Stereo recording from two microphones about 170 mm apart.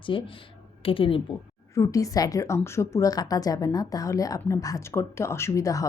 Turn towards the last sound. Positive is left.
turn(degrees=20)  # may be behind; listen again after turning